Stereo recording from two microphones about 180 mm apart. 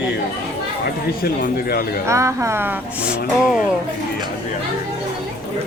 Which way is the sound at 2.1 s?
15° right (ahead or behind).